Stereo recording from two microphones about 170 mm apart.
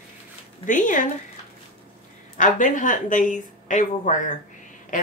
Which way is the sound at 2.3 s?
50° left (ahead or behind).